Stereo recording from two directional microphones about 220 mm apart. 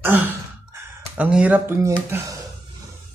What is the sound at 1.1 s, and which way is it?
Speech, 5° right (ahead or behind).